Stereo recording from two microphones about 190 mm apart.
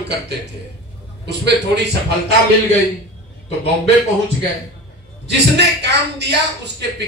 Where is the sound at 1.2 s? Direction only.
60° right (ahead or behind).